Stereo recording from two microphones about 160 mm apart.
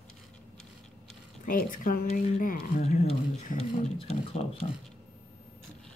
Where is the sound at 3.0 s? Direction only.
40° left (ahead or behind).